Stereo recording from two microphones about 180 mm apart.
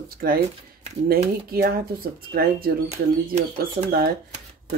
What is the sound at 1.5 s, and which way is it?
Speech, 60° right (ahead or behind).